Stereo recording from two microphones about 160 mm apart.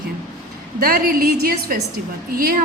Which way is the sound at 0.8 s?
65° right (ahead or behind).